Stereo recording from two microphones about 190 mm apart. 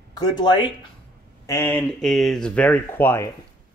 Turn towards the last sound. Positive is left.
turn(degrees=15)  # may be behind; listen again after turning